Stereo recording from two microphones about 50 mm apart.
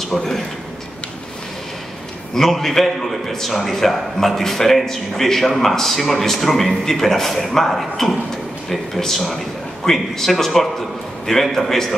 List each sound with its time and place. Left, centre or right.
0.1 s a man's voice: centre
2.3 s a man's voice: centre